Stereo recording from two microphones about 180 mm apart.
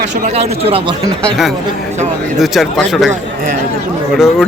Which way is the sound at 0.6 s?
30° right (ahead or behind).